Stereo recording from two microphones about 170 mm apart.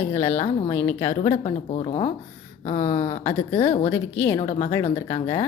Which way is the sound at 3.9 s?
15° left (ahead or behind).